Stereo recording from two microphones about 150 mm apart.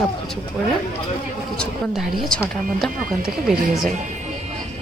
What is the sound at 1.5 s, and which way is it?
Speech, 5° left (ahead or behind).